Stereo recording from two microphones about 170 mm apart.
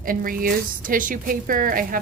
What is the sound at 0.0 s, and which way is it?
A woman's voice, 55° right (ahead or behind).